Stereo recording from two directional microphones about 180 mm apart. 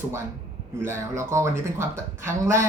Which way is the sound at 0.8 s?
15° right (ahead or behind).